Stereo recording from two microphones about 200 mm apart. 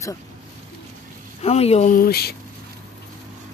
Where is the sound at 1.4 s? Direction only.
30° left (ahead or behind); by 2.4 s 50° left (ahead or behind).